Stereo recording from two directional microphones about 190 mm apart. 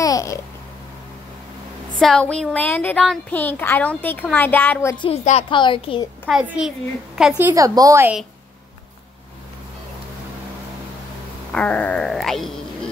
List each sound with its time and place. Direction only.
0.0 s babbling: 20° left (ahead or behind)
2.0 s a woman's voice: 5° left (ahead or behind)
4.9 s a woman's voice: 25° left (ahead or behind)
6.2 s wail: 5° right (ahead or behind)
7.2 s a woman's voice: 5° right (ahead or behind)
11.5 s wail: 5° left (ahead or behind)